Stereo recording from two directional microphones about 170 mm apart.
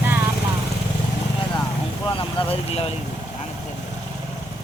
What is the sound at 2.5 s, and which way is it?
Speech, 35° left (ahead or behind).